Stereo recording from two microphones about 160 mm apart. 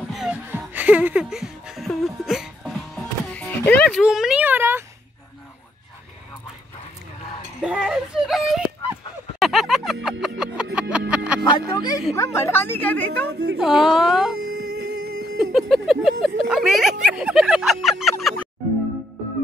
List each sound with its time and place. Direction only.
0.1 s music: 5° right (ahead or behind)
7.6 s whimper: 5° right (ahead or behind)
9.4 s music: centre (ahead or behind)
11.4 s music: 25° left (ahead or behind)
12.2 s a woman's voice: 15° left (ahead or behind)
13.3 s a woman's voice: 90° right
13.6 s speech: centre (ahead or behind)
14.5 s music: 75° right (ahead or behind)
15.5 s speech: centre (ahead or behind)
17.0 s a sound: 5° right (ahead or behind)